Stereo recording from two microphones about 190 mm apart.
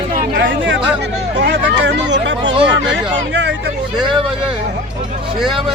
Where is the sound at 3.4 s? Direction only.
65° right (ahead or behind).